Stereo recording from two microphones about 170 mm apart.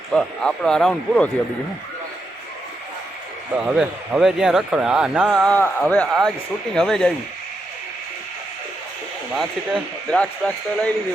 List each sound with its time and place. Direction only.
0.1 s a man's voice: 5° left (ahead or behind)
3.6 s a man's voice: 5° right (ahead or behind)
9.3 s a man's voice: centre (ahead or behind)